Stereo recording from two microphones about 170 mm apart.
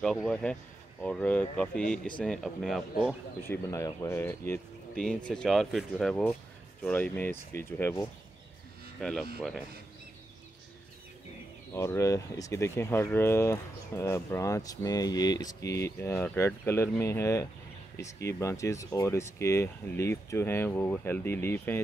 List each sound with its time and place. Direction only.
0.0 s speech: 5° left (ahead or behind)
3.4 s speech: 15° left (ahead or behind)
9.0 s speech: 5° left (ahead or behind)
11.7 s speech: 15° left (ahead or behind)